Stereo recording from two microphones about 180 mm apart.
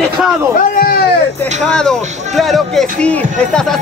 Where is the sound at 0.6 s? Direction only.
55° left (ahead or behind).